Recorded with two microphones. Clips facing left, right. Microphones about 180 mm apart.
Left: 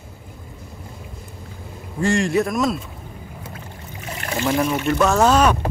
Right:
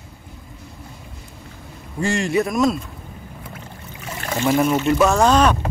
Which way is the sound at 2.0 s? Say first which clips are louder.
Left 1 dB; centre (ahead or behind).